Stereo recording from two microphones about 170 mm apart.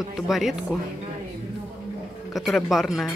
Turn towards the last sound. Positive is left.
turn(degrees=0)  # may be behind; listen again after turning